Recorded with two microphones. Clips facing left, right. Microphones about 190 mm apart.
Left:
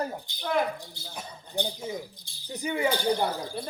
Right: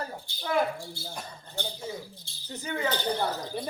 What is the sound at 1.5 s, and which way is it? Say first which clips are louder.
Speech: left 4 dB; 15° left (ahead or behind).